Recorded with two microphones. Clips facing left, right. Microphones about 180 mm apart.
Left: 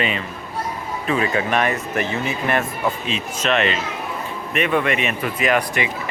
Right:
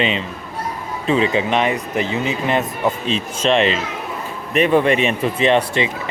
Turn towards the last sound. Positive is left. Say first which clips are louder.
# right 4 dB
turn(degrees=-25)  # may be behind; listen again after turning